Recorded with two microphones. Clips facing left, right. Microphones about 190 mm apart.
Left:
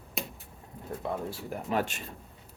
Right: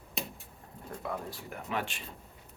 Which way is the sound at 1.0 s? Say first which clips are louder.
Left 4 dB; 30° left (ahead or behind).